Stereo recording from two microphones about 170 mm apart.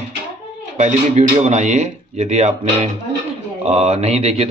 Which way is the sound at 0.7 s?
45° right (ahead or behind).